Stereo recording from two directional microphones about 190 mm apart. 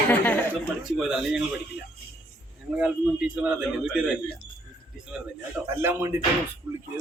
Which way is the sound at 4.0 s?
5° right (ahead or behind).